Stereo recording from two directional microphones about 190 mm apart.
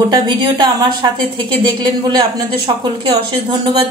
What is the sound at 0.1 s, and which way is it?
A woman's voice, 25° right (ahead or behind).